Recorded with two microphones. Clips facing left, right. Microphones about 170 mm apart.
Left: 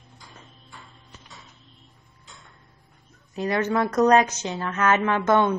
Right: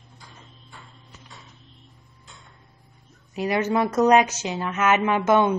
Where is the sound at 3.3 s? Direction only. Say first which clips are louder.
Right 1 dB; 10° right (ahead or behind).